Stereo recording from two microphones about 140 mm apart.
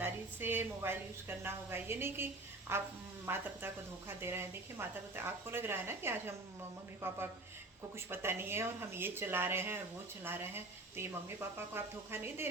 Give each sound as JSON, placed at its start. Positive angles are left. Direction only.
{"t": 0.0, "sound": "a woman's voice", "side_deg": -15}